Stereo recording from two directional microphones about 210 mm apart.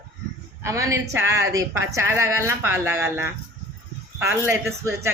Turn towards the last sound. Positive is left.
turn(degrees=-10)  # may be behind; listen again after turning